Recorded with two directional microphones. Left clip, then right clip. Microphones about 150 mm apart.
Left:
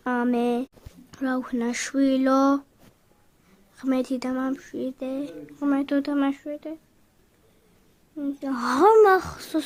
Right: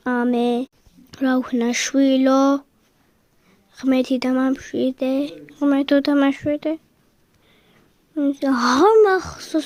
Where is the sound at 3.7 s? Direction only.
35° right (ahead or behind); by 6.8 s 65° right (ahead or behind).